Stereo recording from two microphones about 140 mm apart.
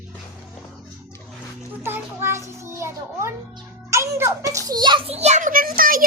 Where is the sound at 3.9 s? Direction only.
20° right (ahead or behind).